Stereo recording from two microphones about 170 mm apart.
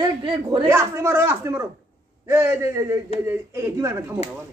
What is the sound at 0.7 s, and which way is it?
Speech, 15° right (ahead or behind).